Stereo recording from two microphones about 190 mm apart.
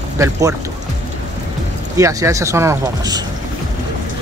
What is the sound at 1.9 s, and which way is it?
Speech, 15° right (ahead or behind).